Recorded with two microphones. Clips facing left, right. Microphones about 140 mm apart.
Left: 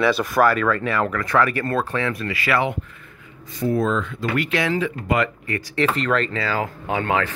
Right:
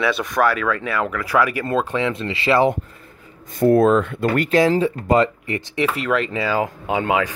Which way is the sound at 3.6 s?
60° right (ahead or behind).